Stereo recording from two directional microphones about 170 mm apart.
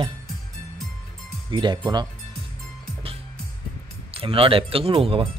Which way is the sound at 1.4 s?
30° right (ahead or behind).